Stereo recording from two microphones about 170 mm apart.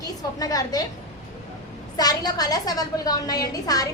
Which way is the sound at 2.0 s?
20° left (ahead or behind).